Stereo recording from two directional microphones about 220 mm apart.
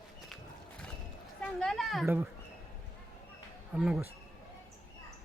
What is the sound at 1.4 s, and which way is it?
Speech, centre (ahead or behind).